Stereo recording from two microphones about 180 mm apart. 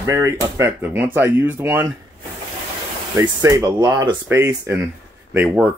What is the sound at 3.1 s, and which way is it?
Speech, 15° right (ahead or behind).